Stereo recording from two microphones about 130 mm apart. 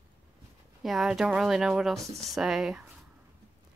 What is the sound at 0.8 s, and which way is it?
Speech, centre (ahead or behind).